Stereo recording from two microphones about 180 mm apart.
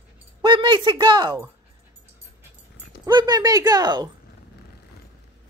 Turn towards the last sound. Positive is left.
turn(degrees=-25)  # may be behind; listen again after turning